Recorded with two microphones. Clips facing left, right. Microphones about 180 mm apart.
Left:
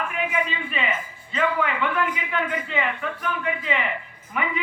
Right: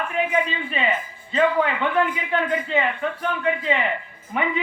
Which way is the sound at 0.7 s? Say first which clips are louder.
Right 3 dB; 35° right (ahead or behind).